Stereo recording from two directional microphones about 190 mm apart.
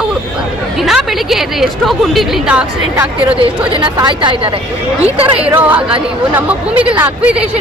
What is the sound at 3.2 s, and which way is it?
A woman's voice, 25° right (ahead or behind).